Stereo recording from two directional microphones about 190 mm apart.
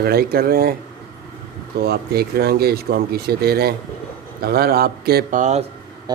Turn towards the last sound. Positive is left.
turn(degrees=-40)  # may be behind; listen again after turning